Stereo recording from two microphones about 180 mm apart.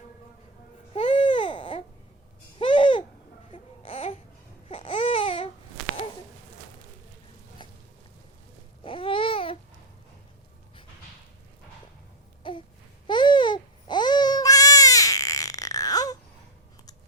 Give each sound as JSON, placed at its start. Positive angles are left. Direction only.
{"t": 0.9, "sound": "baby cry", "side_deg": 30}
{"t": 2.6, "sound": "babbling", "side_deg": 30}
{"t": 4.7, "sound": "a sound", "side_deg": 30}
{"t": 8.8, "sound": "babbling", "side_deg": 30}
{"t": 12.4, "sound": "a sound", "side_deg": 30}
{"t": 13.1, "sound": "goat", "side_deg": 25}